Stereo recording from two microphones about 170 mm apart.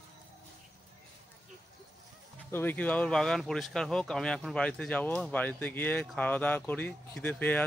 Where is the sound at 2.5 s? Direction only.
10° left (ahead or behind).